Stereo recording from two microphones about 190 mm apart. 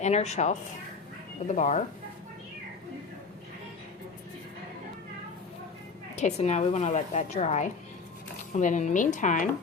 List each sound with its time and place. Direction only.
0.0 s a woman's voice: 35° left (ahead or behind)
1.5 s a woman's voice: 40° left (ahead or behind)
6.1 s a woman's voice: 35° left (ahead or behind)